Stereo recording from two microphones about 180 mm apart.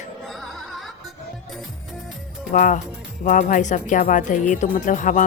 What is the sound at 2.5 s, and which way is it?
Speech, 45° left (ahead or behind).